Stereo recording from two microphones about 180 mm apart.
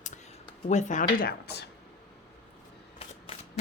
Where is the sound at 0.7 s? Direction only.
40° left (ahead or behind); by 1.7 s 65° left (ahead or behind).